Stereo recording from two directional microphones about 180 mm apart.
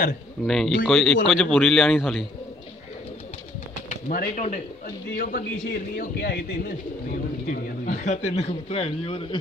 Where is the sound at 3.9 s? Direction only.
50° left (ahead or behind).